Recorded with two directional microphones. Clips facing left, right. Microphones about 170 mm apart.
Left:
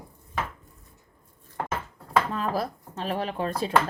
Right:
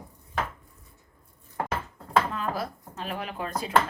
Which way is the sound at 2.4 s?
35° left (ahead or behind).